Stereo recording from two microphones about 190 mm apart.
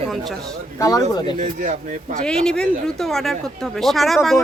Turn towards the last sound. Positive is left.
turn(degrees=0)  # may be behind; listen again after turning